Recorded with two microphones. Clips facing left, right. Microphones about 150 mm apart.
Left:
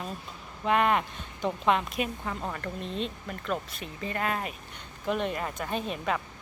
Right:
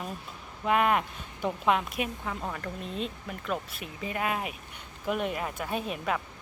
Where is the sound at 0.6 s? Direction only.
5° right (ahead or behind).